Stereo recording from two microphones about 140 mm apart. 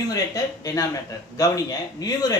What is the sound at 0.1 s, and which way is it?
Speech, 25° left (ahead or behind).